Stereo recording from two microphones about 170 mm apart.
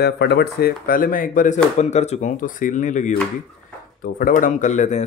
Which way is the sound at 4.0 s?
55° left (ahead or behind).